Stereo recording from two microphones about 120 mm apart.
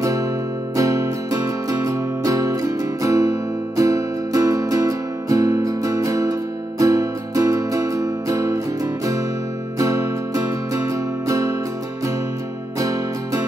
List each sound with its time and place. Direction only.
0.0 s music: 25° right (ahead or behind)
9.8 s music: 25° right (ahead or behind)
12.7 s music: 25° right (ahead or behind)